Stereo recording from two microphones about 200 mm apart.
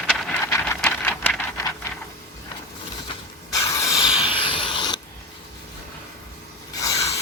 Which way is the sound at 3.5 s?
15° left (ahead or behind).